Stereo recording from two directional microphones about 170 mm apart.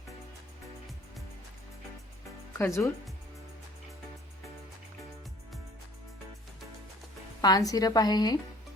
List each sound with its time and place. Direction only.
2.6 s speech: 15° left (ahead or behind)
7.4 s a woman's voice: 20° left (ahead or behind)